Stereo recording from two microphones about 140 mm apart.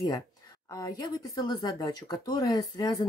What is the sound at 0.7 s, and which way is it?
Speech, 25° left (ahead or behind).